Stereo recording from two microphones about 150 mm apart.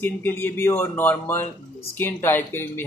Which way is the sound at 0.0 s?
15° left (ahead or behind).